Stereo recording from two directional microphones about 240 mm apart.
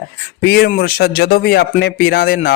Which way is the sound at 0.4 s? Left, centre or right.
Left.